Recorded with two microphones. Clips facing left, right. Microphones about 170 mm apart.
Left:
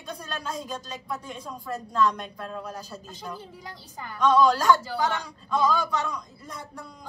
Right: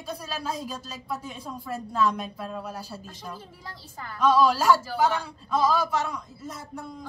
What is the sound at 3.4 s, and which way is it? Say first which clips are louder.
Speech: left 2 dB; 15° left (ahead or behind).